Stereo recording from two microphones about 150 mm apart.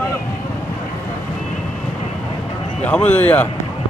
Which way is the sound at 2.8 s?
10° left (ahead or behind).